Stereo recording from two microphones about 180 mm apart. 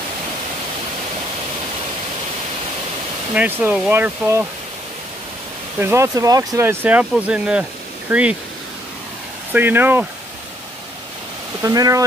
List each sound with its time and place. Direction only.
3.3 s speech: 10° right (ahead or behind)
5.8 s speech: 15° right (ahead or behind)
9.5 s speech: 10° right (ahead or behind)
11.6 s speech: 20° right (ahead or behind)